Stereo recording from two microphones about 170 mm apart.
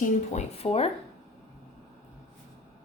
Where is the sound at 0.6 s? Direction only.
35° left (ahead or behind).